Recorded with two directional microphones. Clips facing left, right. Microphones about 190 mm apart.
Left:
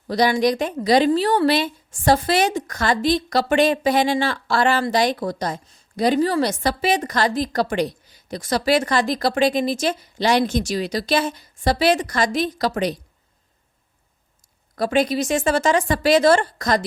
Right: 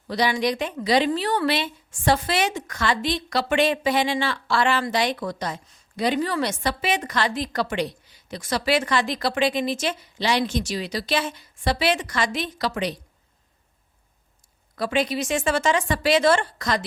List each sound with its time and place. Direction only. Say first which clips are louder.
0.1 s a woman's voice: left 5 dB; 40° left (ahead or behind)
14.8 s a woman's voice: left 4 dB; 40° left (ahead or behind)